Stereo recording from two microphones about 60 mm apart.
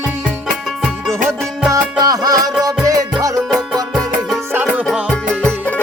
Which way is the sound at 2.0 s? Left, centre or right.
Right.